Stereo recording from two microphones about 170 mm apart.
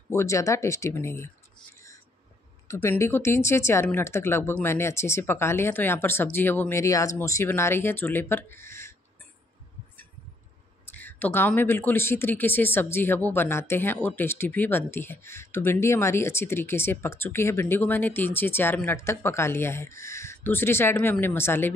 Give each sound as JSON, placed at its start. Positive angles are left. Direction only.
{"t": 0.1, "sound": "speech", "side_deg": 15}
{"t": 2.7, "sound": "speech", "side_deg": 15}
{"t": 10.9, "sound": "speech", "side_deg": 10}